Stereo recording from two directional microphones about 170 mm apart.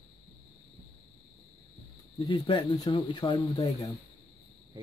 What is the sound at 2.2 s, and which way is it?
Speech, 30° left (ahead or behind).